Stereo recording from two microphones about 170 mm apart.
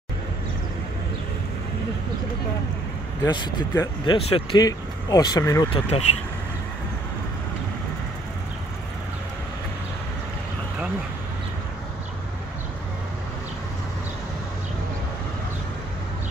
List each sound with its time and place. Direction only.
3.3 s speech: 25° left (ahead or behind)
5.7 s speech: 40° left (ahead or behind)